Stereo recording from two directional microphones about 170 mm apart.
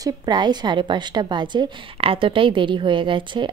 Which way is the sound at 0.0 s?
25° right (ahead or behind).